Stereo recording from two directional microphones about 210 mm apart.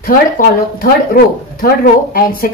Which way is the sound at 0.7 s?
45° left (ahead or behind).